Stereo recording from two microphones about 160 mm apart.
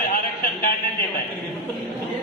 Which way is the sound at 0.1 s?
65° left (ahead or behind).